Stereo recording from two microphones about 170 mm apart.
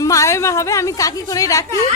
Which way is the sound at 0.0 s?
20° left (ahead or behind).